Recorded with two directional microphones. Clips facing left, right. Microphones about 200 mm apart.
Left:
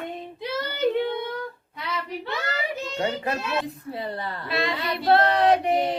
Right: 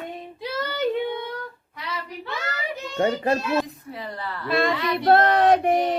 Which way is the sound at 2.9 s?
35° right (ahead or behind).